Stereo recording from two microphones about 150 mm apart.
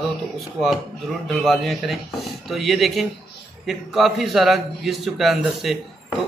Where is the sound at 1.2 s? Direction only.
Centre (ahead or behind).